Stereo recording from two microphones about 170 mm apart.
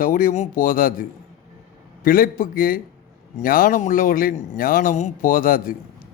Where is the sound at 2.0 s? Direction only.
55° left (ahead or behind).